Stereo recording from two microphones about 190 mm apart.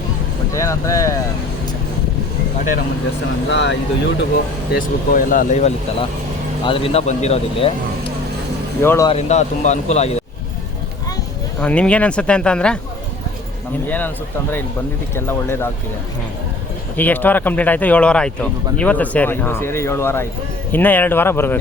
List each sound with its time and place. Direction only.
0.5 s speech: 15° left (ahead or behind)
3.5 s speech: 70° left (ahead or behind)
4.7 s speech: 45° left (ahead or behind)
8.8 s speech: 15° left (ahead or behind)
9.0 s speech: 35° left (ahead or behind)
11.6 s speech: 5° left (ahead or behind)
13.8 s speech: 10° left (ahead or behind)
15.1 s speech: 10° left (ahead or behind)
17.0 s speech: 10° left (ahead or behind)